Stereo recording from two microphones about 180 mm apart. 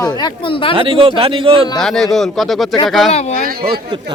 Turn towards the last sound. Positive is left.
turn(degrees=-55)  # may be behind; listen again after turning